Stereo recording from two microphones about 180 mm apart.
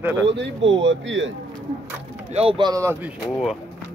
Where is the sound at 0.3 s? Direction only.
90° right.